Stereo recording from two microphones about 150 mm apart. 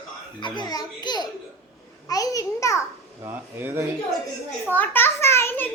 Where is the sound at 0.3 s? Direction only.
30° left (ahead or behind).